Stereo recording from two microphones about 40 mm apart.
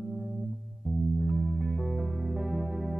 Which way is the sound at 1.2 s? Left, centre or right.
Centre.